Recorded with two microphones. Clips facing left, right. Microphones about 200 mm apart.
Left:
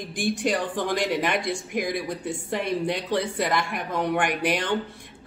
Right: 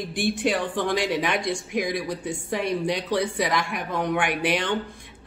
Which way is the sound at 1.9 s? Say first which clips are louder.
Right 1 dB; 55° left (ahead or behind).